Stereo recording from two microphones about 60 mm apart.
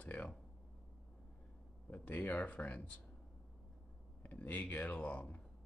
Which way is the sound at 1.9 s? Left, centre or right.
Left.